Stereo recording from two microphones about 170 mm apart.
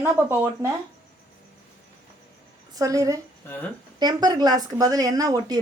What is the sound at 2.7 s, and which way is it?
A woman's voice, 20° right (ahead or behind).